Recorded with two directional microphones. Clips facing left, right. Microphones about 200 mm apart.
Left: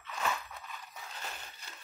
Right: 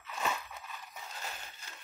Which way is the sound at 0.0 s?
5° right (ahead or behind).